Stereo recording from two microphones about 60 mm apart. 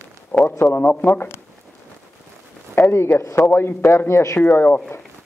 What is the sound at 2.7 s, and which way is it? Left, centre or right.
Speech, left.